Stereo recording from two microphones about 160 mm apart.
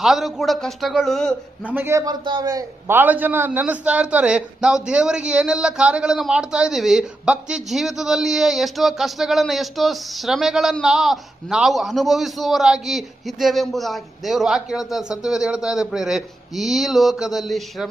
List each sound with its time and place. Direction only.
0.0 s a man's voice: centre (ahead or behind)
1.7 s a man's voice: 15° right (ahead or behind); by 17.8 s centre (ahead or behind)